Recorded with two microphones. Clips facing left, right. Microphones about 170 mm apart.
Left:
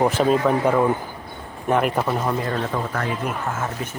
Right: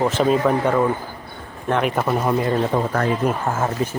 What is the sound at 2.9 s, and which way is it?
Speech, 35° right (ahead or behind).